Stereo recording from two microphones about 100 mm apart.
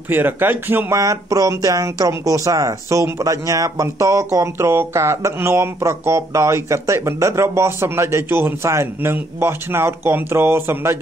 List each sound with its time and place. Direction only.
0.1 s speech: 20° right (ahead or behind)